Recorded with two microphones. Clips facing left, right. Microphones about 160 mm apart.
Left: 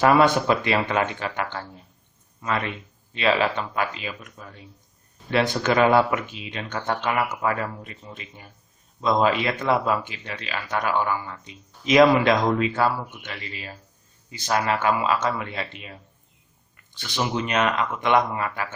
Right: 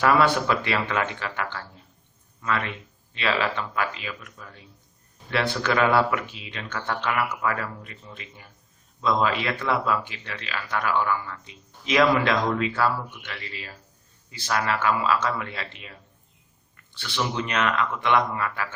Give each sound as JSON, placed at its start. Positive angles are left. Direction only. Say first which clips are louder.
{"t": 0.0, "sound": "speech", "louder": "left 3 dB", "side_deg": 25}
{"t": 3.2, "sound": "speech", "louder": "left 4 dB", "side_deg": 25}